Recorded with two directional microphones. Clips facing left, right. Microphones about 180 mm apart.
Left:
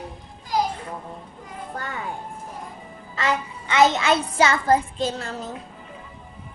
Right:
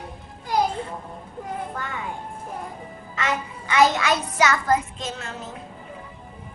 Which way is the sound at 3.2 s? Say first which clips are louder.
Left 2 dB; 25° left (ahead or behind).